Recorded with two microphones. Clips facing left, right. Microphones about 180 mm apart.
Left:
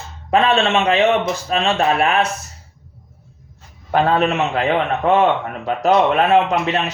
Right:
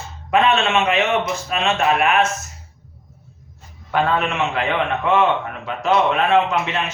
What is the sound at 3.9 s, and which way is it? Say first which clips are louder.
Speech: left 4 dB; 40° left (ahead or behind).